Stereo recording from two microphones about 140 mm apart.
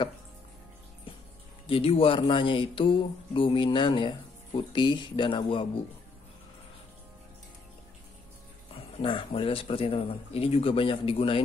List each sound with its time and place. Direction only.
1.7 s speech: 40° left (ahead or behind)
9.0 s speech: 40° left (ahead or behind)